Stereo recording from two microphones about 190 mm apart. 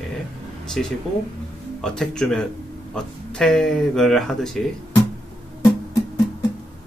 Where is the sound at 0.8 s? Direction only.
5° left (ahead or behind).